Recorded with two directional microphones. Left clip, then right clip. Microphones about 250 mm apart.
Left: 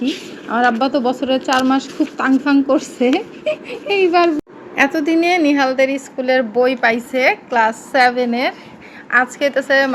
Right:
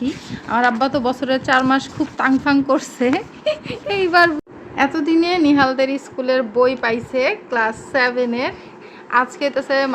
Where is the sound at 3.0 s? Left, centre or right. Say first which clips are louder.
Left 2 dB; right.